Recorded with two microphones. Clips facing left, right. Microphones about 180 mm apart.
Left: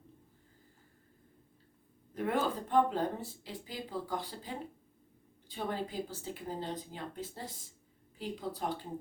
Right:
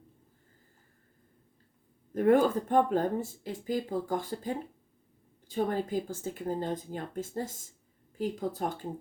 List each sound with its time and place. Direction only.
2.1 s speech: 50° right (ahead or behind)